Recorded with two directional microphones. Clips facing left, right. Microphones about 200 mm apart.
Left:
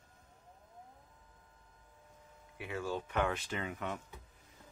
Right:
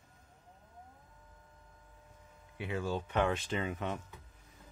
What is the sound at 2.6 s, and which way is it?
Speech, 20° right (ahead or behind).